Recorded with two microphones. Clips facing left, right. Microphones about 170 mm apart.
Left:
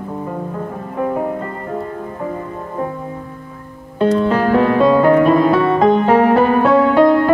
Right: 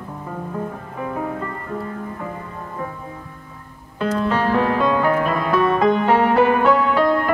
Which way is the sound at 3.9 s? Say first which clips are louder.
Left 6 dB; 30° left (ahead or behind).